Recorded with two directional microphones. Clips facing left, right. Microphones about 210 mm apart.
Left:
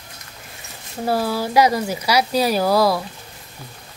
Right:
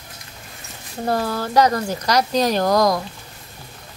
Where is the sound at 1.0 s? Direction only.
5° left (ahead or behind).